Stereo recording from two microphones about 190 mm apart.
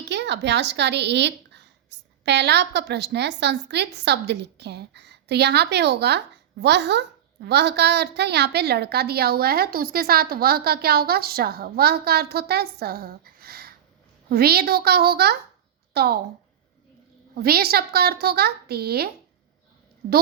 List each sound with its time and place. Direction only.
0.1 s a woman's voice: 65° right (ahead or behind)
17.4 s a woman's voice: 55° right (ahead or behind)